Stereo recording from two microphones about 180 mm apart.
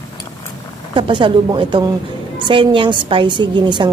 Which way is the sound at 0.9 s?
30° right (ahead or behind).